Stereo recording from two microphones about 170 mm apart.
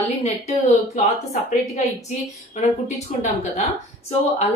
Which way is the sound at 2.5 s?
45° left (ahead or behind).